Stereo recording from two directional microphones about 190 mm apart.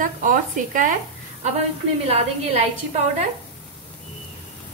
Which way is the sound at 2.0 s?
30° right (ahead or behind).